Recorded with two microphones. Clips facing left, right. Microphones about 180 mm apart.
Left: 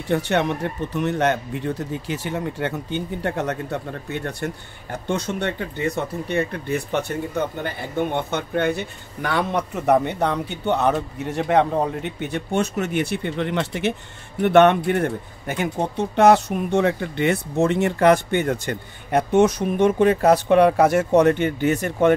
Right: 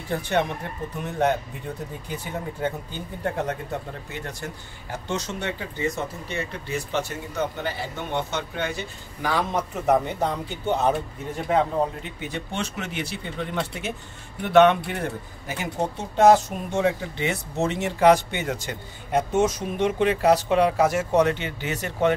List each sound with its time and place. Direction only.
0.1 s speech: 70° left (ahead or behind)
14.4 s speech: 55° left (ahead or behind)